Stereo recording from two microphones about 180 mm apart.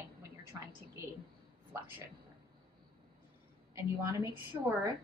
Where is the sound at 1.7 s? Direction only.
10° right (ahead or behind).